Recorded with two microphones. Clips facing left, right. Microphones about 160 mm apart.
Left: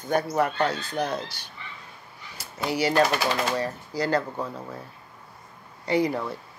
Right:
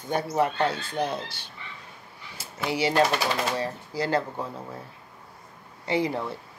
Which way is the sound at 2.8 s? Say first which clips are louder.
Left 1 dB; 25° right (ahead or behind).